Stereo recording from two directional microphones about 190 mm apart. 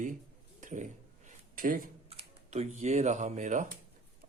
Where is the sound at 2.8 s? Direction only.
35° right (ahead or behind).